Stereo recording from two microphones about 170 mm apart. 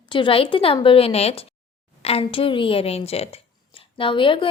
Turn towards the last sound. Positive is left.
turn(degrees=30)  # may be behind; listen again after turning